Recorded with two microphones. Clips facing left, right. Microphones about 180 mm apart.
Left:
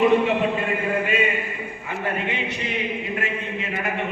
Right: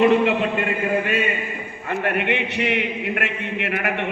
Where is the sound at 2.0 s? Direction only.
65° right (ahead or behind).